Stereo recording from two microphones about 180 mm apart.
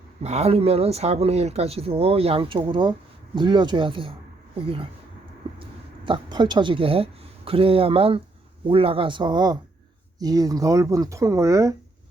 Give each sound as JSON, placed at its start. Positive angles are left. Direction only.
{"t": 0.2, "sound": "speech", "side_deg": -35}
{"t": 6.1, "sound": "speech", "side_deg": -25}